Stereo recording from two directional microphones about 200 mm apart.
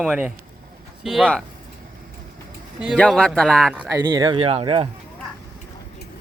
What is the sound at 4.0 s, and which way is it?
Speech, 20° right (ahead or behind).